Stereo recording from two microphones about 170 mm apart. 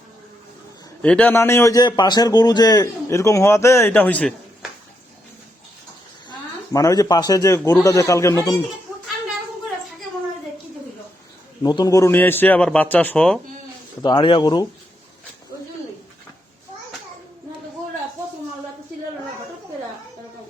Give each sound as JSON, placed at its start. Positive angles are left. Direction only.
{"t": 1.0, "sound": "a man's voice", "side_deg": 5}
{"t": 6.7, "sound": "a man's voice", "side_deg": 20}
{"t": 11.6, "sound": "a man's voice", "side_deg": 25}
{"t": 14.0, "sound": "a man's voice", "side_deg": 25}